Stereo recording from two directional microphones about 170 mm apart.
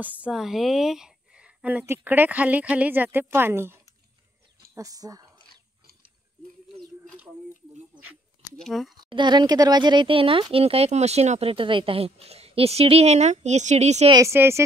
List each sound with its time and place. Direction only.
0.0 s speech: 10° right (ahead or behind)
8.6 s speech: centre (ahead or behind)
8.9 s speech: 25° right (ahead or behind)
14.1 s speech: 15° right (ahead or behind)